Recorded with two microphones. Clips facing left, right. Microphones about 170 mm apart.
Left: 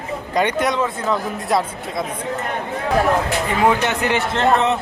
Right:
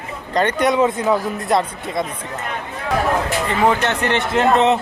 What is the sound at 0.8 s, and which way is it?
Speech, 15° right (ahead or behind).